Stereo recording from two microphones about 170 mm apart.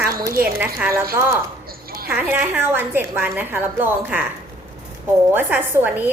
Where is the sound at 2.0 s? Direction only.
10° right (ahead or behind).